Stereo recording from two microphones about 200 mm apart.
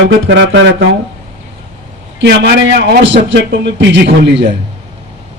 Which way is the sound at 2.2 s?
55° right (ahead or behind).